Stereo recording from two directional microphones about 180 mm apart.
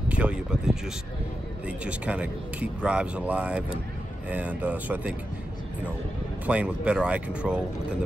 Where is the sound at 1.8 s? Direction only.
5° right (ahead or behind).